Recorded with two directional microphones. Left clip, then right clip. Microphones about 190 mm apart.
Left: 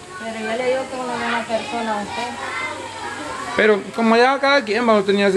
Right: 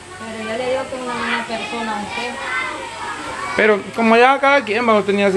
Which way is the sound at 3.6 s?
Centre (ahead or behind).